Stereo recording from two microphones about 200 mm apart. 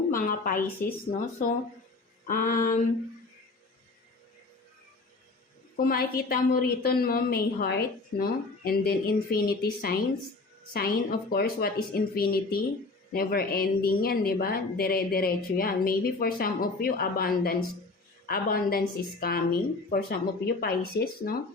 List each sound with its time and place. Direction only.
0.1 s a sound: 45° left (ahead or behind)
0.8 s a woman's voice: 45° left (ahead or behind)
5.7 s a woman's voice: 50° left (ahead or behind)